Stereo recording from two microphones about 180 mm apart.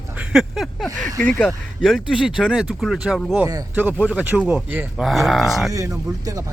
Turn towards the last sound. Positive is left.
turn(degrees=-20)  # may be behind; listen again after turning